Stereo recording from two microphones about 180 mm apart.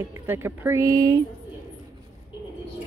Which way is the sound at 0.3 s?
15° right (ahead or behind).